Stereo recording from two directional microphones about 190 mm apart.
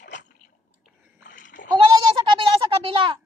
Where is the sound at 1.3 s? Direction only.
45° left (ahead or behind).